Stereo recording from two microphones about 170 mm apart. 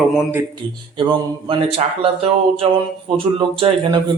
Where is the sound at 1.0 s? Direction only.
30° right (ahead or behind).